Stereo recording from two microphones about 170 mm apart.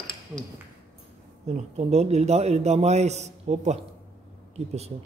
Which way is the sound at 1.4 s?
40° right (ahead or behind).